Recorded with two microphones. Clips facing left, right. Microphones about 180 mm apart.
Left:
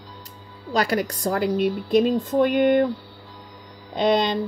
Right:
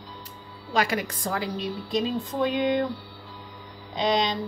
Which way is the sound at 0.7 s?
40° left (ahead or behind).